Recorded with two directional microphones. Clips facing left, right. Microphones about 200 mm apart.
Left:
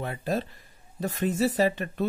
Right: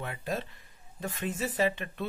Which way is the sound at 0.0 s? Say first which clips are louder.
Left 5 dB; 35° left (ahead or behind).